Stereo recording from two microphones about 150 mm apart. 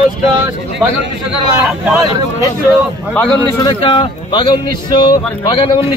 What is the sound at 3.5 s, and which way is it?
A man's voice, 30° left (ahead or behind).